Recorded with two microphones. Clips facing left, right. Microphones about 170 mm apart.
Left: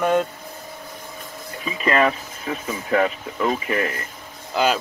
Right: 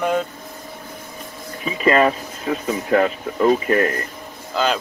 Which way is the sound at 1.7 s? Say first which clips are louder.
Right 3 dB; 35° right (ahead or behind).